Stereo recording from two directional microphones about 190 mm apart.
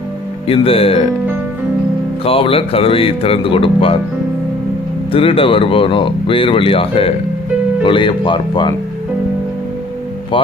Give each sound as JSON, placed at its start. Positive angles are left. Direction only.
{"t": 0.4, "sound": "speech", "side_deg": 30}
{"t": 2.2, "sound": "speech", "side_deg": 30}
{"t": 5.1, "sound": "speech", "side_deg": 30}
{"t": 10.3, "sound": "speech", "side_deg": 25}